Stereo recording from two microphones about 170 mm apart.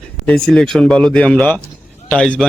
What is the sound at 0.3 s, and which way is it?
A man's voice, 5° left (ahead or behind).